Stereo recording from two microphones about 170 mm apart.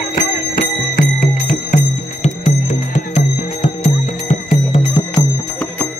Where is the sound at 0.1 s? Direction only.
55° left (ahead or behind); by 4.8 s 40° left (ahead or behind).